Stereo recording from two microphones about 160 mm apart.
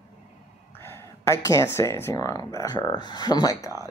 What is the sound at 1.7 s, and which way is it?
Speech, 15° left (ahead or behind).